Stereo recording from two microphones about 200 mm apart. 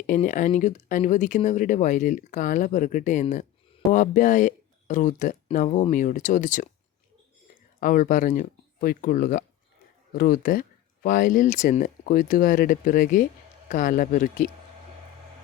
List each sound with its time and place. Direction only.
0.1 s speech: 40° left (ahead or behind)
5.6 s speech: 25° left (ahead or behind)
5.9 s speech: 40° left (ahead or behind)
7.8 s speech: 45° left (ahead or behind)